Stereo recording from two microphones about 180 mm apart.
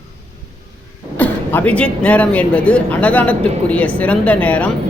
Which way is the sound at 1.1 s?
10° left (ahead or behind).